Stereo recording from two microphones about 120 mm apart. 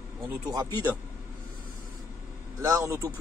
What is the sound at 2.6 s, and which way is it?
Speech, 25° right (ahead or behind).